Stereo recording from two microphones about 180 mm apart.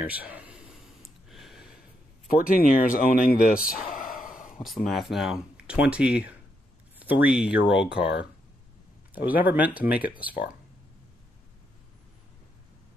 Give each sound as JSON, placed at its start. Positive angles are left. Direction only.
{"t": 0.0, "sound": "a sound", "side_deg": -10}
{"t": 2.2, "sound": "speech", "side_deg": 50}
{"t": 3.9, "sound": "gasp", "side_deg": 50}
{"t": 4.6, "sound": "speech", "side_deg": 0}
{"t": 7.0, "sound": "a sound", "side_deg": -10}
{"t": 7.3, "sound": "speech", "side_deg": -5}
{"t": 9.3, "sound": "speech", "side_deg": -10}